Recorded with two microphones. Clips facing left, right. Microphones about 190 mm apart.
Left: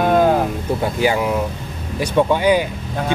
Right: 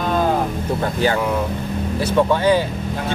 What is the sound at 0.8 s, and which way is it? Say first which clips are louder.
Speech: left 1 dB; 10° left (ahead or behind).